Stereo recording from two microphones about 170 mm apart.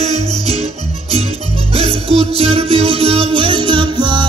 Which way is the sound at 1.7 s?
35° right (ahead or behind).